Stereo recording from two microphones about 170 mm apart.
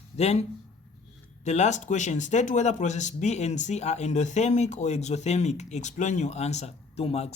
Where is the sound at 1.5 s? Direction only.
40° left (ahead or behind).